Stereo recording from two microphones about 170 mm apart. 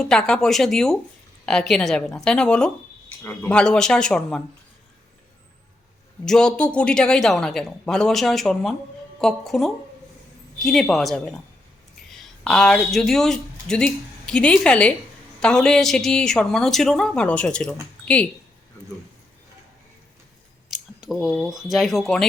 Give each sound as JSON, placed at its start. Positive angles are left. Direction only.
{"t": 0.0, "sound": "speech", "side_deg": 5}
{"t": 6.2, "sound": "speech", "side_deg": 5}
{"t": 20.7, "sound": "speech", "side_deg": 0}